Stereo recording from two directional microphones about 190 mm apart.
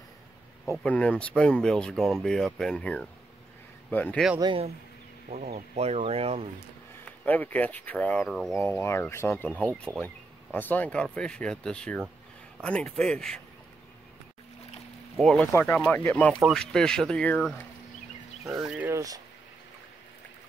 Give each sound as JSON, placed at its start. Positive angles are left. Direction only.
{"t": 0.7, "sound": "speech", "side_deg": 5}
{"t": 4.4, "sound": "speech", "side_deg": -25}
{"t": 5.8, "sound": "speech", "side_deg": -35}
{"t": 7.2, "sound": "speech", "side_deg": 10}
{"t": 8.5, "sound": "speech", "side_deg": 10}
{"t": 15.1, "sound": "speech", "side_deg": 0}
{"t": 18.6, "sound": "speech", "side_deg": -5}